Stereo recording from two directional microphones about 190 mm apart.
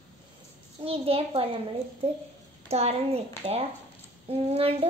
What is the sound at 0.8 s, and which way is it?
Speech, 30° right (ahead or behind).